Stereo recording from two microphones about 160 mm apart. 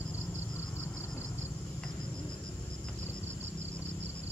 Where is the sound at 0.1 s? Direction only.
15° left (ahead or behind).